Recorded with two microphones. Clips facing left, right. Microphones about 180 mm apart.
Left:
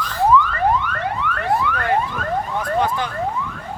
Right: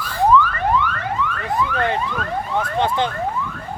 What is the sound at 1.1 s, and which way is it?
Car alarm, 65° left (ahead or behind).